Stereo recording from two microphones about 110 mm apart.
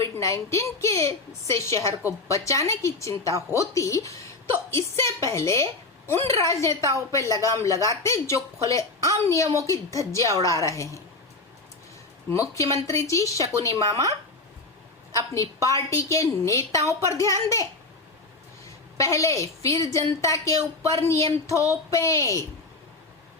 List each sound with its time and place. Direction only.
0.0 s a woman's voice: 30° left (ahead or behind)
12.3 s a woman's voice: 30° left (ahead or behind)
15.3 s a woman's voice: 25° left (ahead or behind)
18.9 s a woman's voice: 30° left (ahead or behind)